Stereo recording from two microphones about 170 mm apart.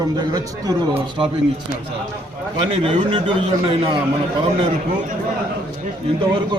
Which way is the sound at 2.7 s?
35° right (ahead or behind).